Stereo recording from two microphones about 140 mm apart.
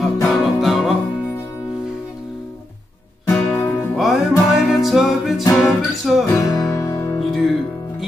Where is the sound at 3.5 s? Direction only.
10° left (ahead or behind).